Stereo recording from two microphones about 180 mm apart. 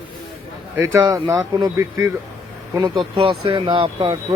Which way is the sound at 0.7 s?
15° right (ahead or behind).